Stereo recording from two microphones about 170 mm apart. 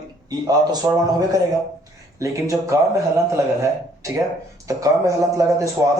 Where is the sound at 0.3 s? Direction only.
20° right (ahead or behind).